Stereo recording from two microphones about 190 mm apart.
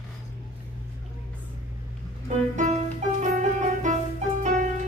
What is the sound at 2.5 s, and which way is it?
Music, 40° right (ahead or behind).